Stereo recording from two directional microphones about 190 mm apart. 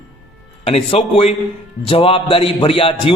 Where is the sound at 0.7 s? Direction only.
35° left (ahead or behind).